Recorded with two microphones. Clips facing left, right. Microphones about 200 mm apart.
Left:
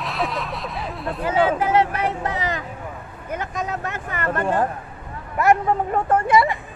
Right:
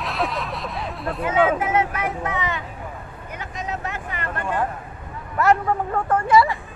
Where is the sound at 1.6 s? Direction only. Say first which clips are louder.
Left 3 dB; 35° left (ahead or behind).